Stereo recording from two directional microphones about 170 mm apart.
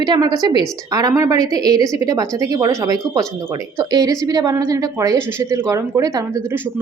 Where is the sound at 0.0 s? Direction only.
25° right (ahead or behind).